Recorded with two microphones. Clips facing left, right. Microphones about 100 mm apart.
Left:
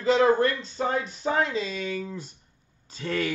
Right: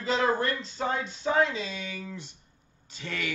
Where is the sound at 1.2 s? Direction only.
35° left (ahead or behind).